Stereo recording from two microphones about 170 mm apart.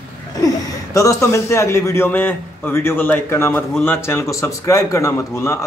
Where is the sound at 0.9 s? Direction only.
20° left (ahead or behind).